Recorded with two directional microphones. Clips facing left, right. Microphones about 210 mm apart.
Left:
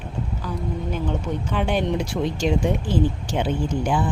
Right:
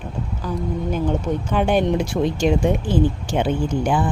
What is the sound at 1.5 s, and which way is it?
Speech, 50° right (ahead or behind).